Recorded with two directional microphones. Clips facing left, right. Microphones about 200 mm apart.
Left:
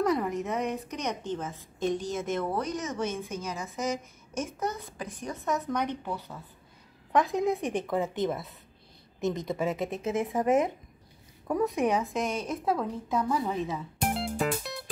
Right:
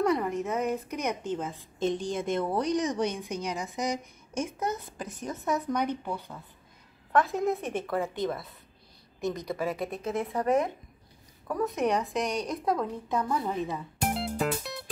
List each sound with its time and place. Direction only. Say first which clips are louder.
0.0 s a woman's voice: right 1 dB; centre (ahead or behind)
1.8 s a woman's voice: right 1 dB; 30° right (ahead or behind)
2.7 s a woman's voice: right 4 dB; 15° right (ahead or behind)
5.5 s a woman's voice: right 1 dB; centre (ahead or behind)
7.1 s a woman's voice: even; 15° left (ahead or behind)
11.6 s a woman's voice: even; 10° left (ahead or behind)